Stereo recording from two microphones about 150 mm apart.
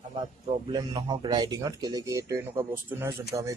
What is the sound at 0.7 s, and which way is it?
Speech, 30° right (ahead or behind).